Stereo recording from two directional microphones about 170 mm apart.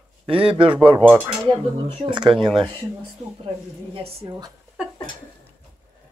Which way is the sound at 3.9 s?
30° right (ahead or behind).